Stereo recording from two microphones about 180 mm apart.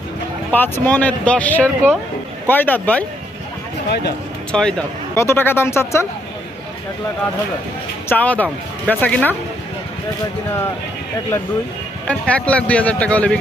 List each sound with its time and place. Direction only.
0.5 s speech: 10° left (ahead or behind)
3.8 s speech: 65° left (ahead or behind)
4.5 s speech: 5° left (ahead or behind)
5.1 s speech: 15° left (ahead or behind)
8.1 s speech: 10° left (ahead or behind)
12.0 s speech: 5° left (ahead or behind)